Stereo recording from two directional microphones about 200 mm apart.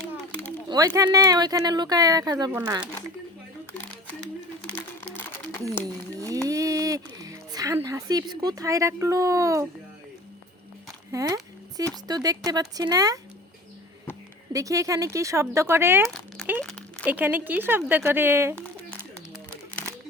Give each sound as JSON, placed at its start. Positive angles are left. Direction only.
{"t": 0.7, "sound": "speech", "side_deg": -15}
{"t": 6.1, "sound": "a sound", "side_deg": -15}
{"t": 11.1, "sound": "speech", "side_deg": -15}
{"t": 14.5, "sound": "speech", "side_deg": -15}
{"t": 16.0, "sound": "crumpling", "side_deg": 0}
{"t": 16.6, "sound": "a sound", "side_deg": 5}
{"t": 17.1, "sound": "speech", "side_deg": -10}